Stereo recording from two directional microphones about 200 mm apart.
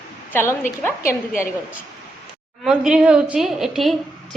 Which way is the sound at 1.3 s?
40° left (ahead or behind).